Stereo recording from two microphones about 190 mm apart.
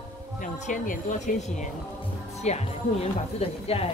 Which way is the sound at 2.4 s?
35° left (ahead or behind).